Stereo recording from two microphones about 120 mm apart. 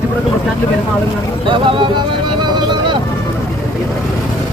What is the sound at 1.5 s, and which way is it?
Speech, 45° right (ahead or behind).